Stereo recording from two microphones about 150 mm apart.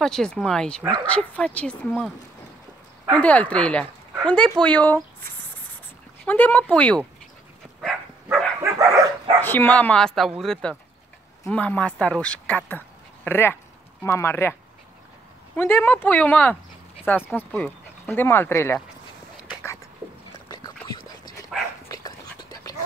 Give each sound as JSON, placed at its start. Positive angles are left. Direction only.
{"t": 0.0, "sound": "speech", "side_deg": 5}
{"t": 3.2, "sound": "speech", "side_deg": 10}
{"t": 6.2, "sound": "speech", "side_deg": 10}
{"t": 7.8, "sound": "dog", "side_deg": 5}
{"t": 8.5, "sound": "dog", "side_deg": -20}
{"t": 9.4, "sound": "speech", "side_deg": 15}
{"t": 20.4, "sound": "dog", "side_deg": 25}
{"t": 21.8, "sound": "a sound", "side_deg": 25}